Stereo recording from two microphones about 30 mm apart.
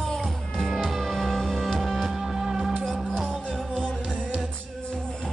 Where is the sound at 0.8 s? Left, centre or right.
Centre.